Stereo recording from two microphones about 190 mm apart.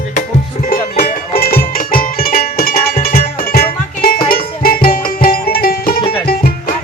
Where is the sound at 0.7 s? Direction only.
50° left (ahead or behind).